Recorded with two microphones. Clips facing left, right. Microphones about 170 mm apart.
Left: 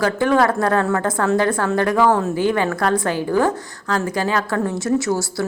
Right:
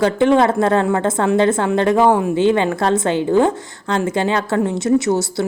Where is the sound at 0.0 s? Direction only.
20° right (ahead or behind).